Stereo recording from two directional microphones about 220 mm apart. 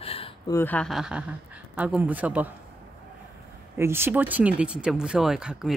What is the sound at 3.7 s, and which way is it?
Speech, 10° right (ahead or behind).